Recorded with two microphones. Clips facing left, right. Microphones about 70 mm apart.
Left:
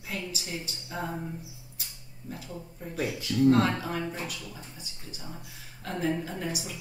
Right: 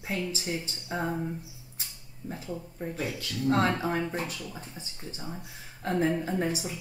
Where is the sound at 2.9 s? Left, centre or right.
Centre.